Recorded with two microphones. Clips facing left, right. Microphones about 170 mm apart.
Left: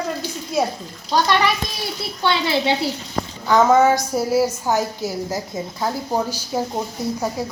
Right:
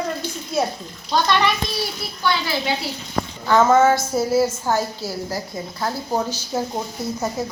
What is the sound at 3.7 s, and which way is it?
A woman's voice, 15° left (ahead or behind).